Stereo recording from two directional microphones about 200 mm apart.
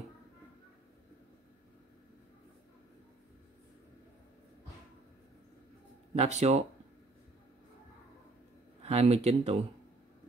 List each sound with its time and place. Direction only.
6.1 s speech: 35° right (ahead or behind)
8.8 s speech: 30° right (ahead or behind)